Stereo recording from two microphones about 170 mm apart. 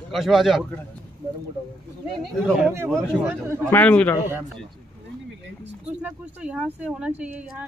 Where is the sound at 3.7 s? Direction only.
10° left (ahead or behind).